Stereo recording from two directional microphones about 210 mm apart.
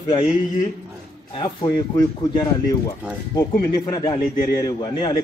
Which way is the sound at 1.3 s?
25° left (ahead or behind).